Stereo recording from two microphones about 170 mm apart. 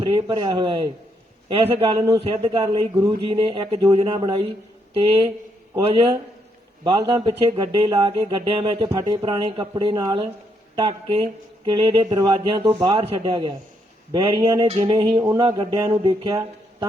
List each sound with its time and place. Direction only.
0.0 s speech: 30° right (ahead or behind)
12.0 s speech: 20° right (ahead or behind)